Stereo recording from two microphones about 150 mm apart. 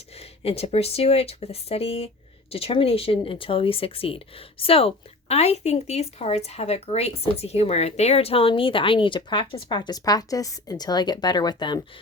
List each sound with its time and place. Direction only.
0.2 s speech: 40° left (ahead or behind)